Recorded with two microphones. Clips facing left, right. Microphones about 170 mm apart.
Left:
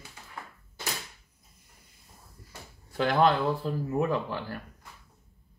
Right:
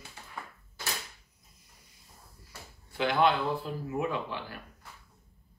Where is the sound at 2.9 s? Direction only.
40° left (ahead or behind).